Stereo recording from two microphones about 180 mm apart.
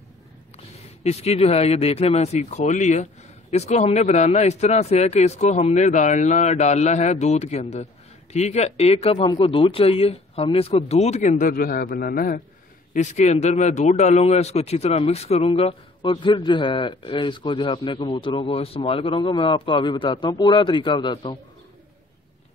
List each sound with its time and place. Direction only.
1.0 s speech: 35° left (ahead or behind); by 12.4 s 55° left (ahead or behind)
12.9 s speech: 40° left (ahead or behind)